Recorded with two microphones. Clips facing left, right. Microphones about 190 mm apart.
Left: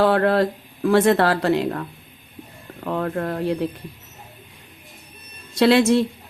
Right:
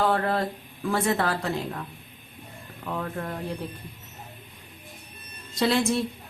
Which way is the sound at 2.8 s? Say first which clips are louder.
Left 8 dB; 65° left (ahead or behind).